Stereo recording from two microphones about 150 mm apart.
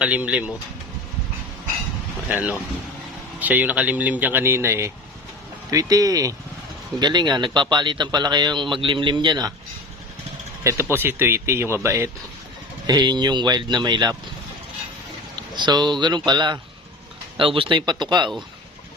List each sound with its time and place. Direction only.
0.0 s speech: 10° right (ahead or behind)
2.3 s a man's voice: 5° right (ahead or behind); by 9.5 s 30° right (ahead or behind)
10.6 s a man's voice: 20° right (ahead or behind)
15.4 s speech: 30° right (ahead or behind)